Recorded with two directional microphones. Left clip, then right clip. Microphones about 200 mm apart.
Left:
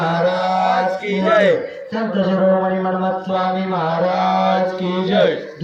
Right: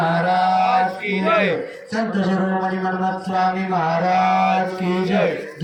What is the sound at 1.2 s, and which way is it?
Speech, 40° left (ahead or behind).